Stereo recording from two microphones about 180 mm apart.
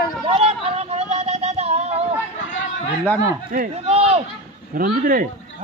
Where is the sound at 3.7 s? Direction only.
35° right (ahead or behind).